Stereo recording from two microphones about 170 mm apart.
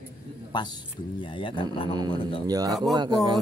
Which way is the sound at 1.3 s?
30° left (ahead or behind).